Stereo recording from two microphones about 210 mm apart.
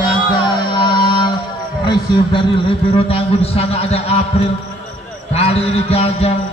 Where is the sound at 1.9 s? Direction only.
20° left (ahead or behind).